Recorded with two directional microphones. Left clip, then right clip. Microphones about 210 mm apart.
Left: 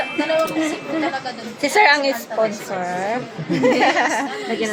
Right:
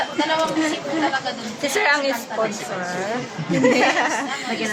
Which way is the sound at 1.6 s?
20° left (ahead or behind).